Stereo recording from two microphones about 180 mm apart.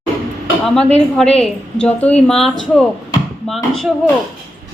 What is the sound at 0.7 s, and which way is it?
A woman's voice, 5° left (ahead or behind).